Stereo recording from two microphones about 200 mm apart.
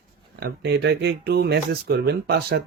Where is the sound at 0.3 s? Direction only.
55° right (ahead or behind).